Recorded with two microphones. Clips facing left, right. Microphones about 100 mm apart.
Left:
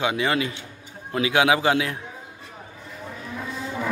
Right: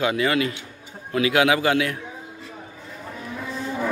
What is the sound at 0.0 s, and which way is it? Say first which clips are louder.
A man's voice: right 2 dB; 20° left (ahead or behind).